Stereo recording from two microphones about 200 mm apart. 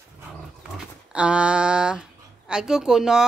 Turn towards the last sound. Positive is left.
turn(degrees=-5)  # may be behind; listen again after turning